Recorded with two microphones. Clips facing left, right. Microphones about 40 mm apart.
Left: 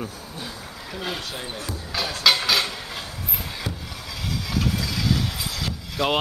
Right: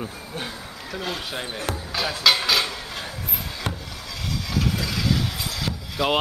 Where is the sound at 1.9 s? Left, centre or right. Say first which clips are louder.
Even; centre.